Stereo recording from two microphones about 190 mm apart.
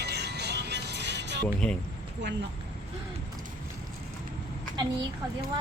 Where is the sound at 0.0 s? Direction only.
60° right (ahead or behind).